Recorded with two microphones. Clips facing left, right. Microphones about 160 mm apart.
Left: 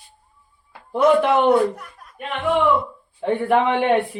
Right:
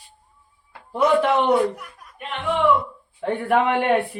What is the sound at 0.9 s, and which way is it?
Speech, centre (ahead or behind).